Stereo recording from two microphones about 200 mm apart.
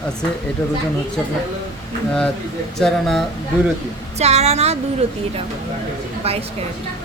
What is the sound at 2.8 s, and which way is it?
Speech, centre (ahead or behind).